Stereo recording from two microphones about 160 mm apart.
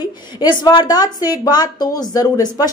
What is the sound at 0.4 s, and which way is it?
A woman's voice, 30° left (ahead or behind).